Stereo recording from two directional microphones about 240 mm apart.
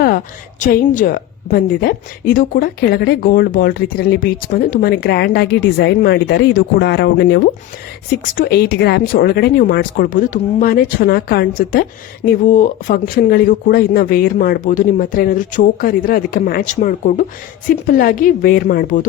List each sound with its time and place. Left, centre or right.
0.6 s a woman's voice: left